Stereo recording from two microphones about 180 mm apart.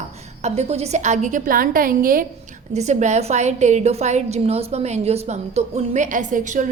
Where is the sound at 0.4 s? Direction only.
35° right (ahead or behind).